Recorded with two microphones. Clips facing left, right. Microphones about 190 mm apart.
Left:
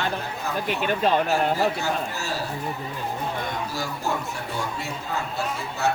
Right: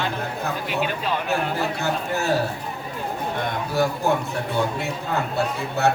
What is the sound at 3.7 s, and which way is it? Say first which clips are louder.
Speech: right 8 dB; 60° right (ahead or behind).